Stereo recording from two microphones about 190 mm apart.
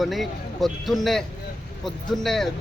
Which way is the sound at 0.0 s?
Centre (ahead or behind).